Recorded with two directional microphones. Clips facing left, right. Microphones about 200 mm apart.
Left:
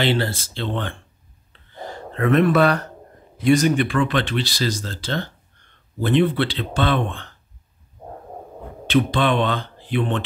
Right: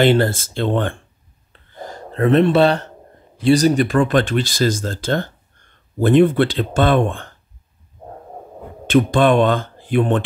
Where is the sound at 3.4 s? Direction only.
35° right (ahead or behind).